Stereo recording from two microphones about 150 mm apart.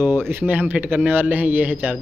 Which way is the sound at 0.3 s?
10° right (ahead or behind).